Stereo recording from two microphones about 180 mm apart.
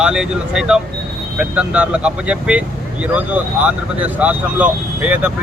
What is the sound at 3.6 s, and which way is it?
Speech, 10° right (ahead or behind).